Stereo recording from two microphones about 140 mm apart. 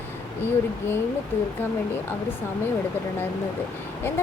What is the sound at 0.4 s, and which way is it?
Speech, 15° left (ahead or behind).